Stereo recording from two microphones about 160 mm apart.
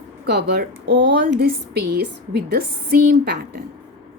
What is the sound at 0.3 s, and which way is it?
Speech, 90° right.